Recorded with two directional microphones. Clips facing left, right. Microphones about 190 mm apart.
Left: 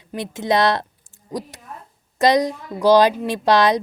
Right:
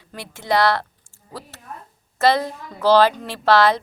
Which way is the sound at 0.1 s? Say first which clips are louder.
Left 2 dB; 20° left (ahead or behind).